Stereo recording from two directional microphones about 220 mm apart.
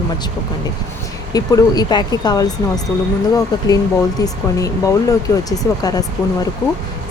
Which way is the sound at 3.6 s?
15° left (ahead or behind).